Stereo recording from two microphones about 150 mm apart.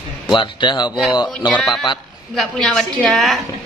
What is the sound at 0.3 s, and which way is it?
Speech, 30° left (ahead or behind).